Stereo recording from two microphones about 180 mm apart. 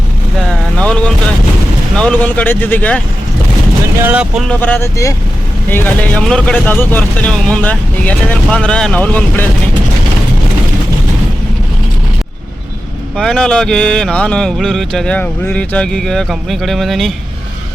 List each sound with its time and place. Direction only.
0.4 s vehicle: 5° left (ahead or behind)
2.0 s speech: 5° left (ahead or behind)
4.0 s speech: 5° right (ahead or behind); by 9.5 s 10° left (ahead or behind)
13.1 s speech: 5° left (ahead or behind)